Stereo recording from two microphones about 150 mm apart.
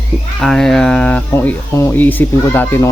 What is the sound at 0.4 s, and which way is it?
Speech, 5° left (ahead or behind).